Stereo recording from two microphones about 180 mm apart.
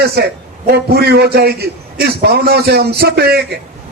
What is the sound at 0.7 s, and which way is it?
A man's voice, 60° right (ahead or behind).